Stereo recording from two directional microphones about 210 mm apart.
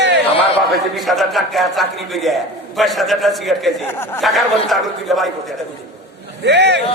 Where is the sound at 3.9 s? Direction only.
10° left (ahead or behind).